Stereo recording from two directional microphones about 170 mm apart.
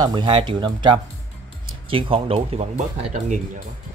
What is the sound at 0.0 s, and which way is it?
Speech, 30° right (ahead or behind).